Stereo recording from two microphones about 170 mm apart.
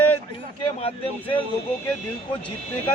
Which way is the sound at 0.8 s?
35° left (ahead or behind).